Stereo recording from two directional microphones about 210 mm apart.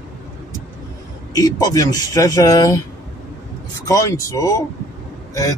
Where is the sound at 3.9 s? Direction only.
15° left (ahead or behind).